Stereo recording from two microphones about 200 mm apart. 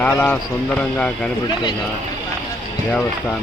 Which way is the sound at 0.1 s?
10° left (ahead or behind).